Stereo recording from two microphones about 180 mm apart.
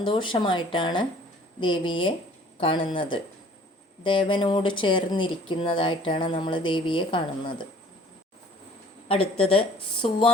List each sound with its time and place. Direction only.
0.0 s speech: 25° left (ahead or behind)
9.0 s a woman's voice: 30° left (ahead or behind)